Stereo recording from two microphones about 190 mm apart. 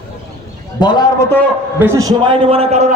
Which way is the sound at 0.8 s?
20° left (ahead or behind).